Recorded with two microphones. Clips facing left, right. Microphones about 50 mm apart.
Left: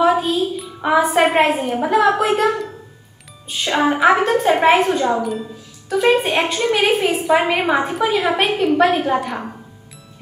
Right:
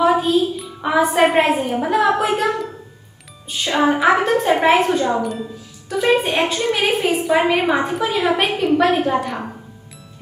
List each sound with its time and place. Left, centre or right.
0.0 s a woman's voice: centre